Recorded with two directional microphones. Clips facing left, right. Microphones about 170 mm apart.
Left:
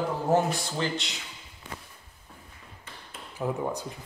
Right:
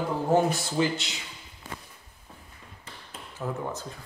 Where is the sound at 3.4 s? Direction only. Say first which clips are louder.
Left 3 dB; 15° left (ahead or behind).